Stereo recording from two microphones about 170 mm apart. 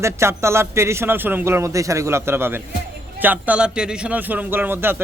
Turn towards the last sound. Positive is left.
turn(degrees=-10)  # may be behind; listen again after turning